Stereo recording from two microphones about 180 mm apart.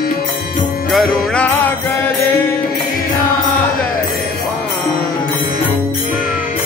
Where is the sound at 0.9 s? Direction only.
Centre (ahead or behind).